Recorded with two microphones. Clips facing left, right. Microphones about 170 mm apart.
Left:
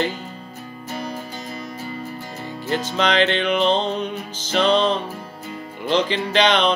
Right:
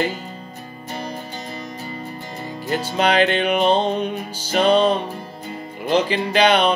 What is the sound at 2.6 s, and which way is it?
Music, 10° right (ahead or behind).